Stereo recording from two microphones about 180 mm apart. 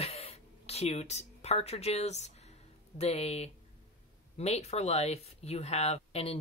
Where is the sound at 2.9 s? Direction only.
35° left (ahead or behind).